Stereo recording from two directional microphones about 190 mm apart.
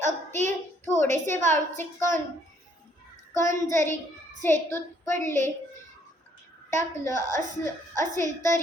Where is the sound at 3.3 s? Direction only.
15° left (ahead or behind).